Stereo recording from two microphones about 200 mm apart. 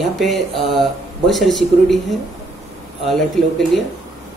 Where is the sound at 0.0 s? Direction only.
Centre (ahead or behind).